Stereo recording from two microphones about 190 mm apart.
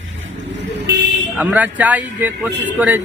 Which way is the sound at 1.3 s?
10° right (ahead or behind).